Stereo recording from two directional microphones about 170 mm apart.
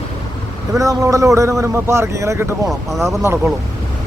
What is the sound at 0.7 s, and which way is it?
A man's voice, 20° right (ahead or behind).